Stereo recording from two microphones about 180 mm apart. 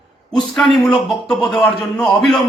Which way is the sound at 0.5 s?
Centre (ahead or behind).